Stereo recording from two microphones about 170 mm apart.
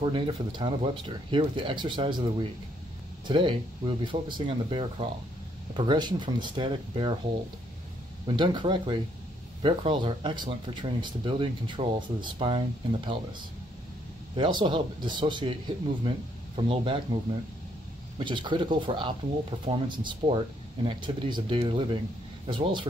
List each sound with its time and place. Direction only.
0.0 s speech: 25° right (ahead or behind)
8.3 s speech: 25° right (ahead or behind)
14.3 s speech: 30° right (ahead or behind)
18.2 s speech: 30° right (ahead or behind)